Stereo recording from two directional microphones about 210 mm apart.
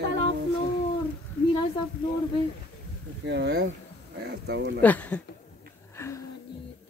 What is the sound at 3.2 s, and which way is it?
Speech, 55° right (ahead or behind).